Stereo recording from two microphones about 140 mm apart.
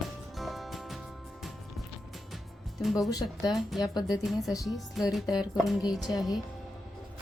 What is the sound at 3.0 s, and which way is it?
Speech, 25° left (ahead or behind).